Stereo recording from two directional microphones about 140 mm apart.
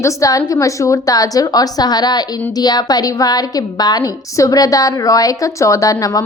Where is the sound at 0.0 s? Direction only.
25° left (ahead or behind).